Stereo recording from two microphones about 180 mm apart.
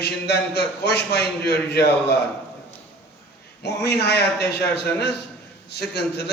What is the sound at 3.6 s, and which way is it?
A man's voice, 70° left (ahead or behind).